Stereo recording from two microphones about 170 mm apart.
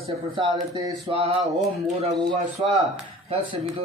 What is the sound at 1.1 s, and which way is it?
Speech, 35° right (ahead or behind).